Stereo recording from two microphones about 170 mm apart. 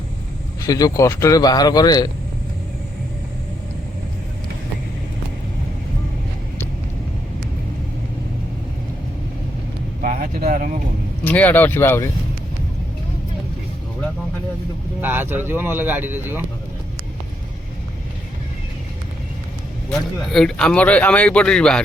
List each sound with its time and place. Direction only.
0.6 s speech: 20° left (ahead or behind)
10.0 s vehicle: 50° right (ahead or behind)
11.2 s speech: 10° left (ahead or behind)
15.0 s speech: 10° right (ahead or behind)
19.9 s a man's voice: 5° left (ahead or behind)